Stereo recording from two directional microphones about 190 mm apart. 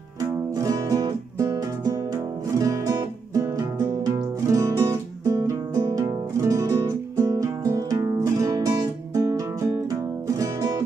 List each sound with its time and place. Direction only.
0.3 s music: 15° right (ahead or behind)